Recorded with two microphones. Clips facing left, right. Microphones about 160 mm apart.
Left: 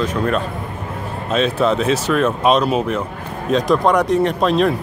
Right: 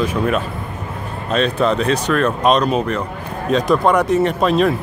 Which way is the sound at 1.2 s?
5° left (ahead or behind).